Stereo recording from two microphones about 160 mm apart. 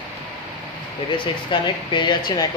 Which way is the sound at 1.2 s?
30° left (ahead or behind).